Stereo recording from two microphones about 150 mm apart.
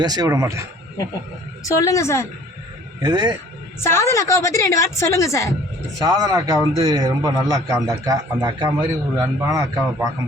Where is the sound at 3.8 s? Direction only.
15° left (ahead or behind).